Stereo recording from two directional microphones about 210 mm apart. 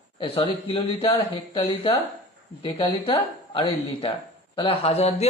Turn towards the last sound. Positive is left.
turn(degrees=30)  # may be behind; listen again after turning